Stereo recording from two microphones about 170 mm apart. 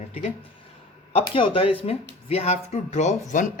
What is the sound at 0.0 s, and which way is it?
Speech, 40° left (ahead or behind).